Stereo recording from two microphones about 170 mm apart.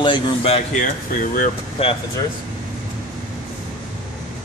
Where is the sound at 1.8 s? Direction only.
35° left (ahead or behind).